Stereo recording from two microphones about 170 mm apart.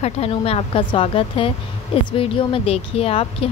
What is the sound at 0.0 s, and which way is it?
A woman's voice, 35° left (ahead or behind).